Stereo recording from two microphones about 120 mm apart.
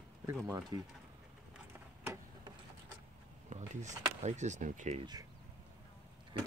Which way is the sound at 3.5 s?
80° right.